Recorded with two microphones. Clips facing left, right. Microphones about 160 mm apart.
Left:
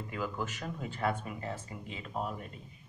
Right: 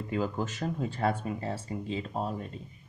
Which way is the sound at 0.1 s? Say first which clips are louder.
Right 6 dB; 30° right (ahead or behind).